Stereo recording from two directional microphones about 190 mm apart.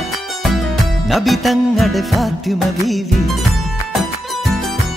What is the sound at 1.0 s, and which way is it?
Music, centre (ahead or behind).